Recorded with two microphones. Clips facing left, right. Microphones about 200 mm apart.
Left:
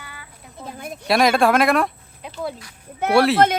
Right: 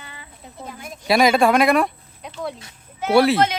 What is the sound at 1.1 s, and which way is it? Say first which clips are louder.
Speech: right 1 dB; centre (ahead or behind).